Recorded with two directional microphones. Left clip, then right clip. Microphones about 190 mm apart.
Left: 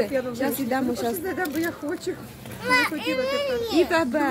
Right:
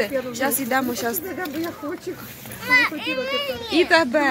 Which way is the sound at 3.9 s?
30° right (ahead or behind).